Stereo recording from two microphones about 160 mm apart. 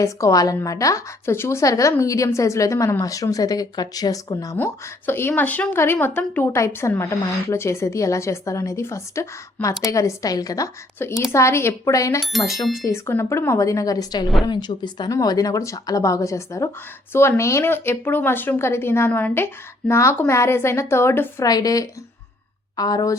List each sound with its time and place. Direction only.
0.0 s a woman's voice: 20° left (ahead or behind)